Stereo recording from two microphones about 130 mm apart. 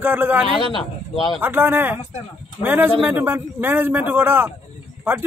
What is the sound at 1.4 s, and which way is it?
A man's voice, 15° right (ahead or behind).